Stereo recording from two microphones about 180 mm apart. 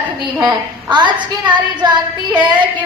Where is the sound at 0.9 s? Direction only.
25° right (ahead or behind).